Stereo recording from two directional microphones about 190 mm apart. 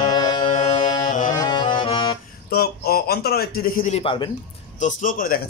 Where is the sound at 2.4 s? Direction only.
55° left (ahead or behind).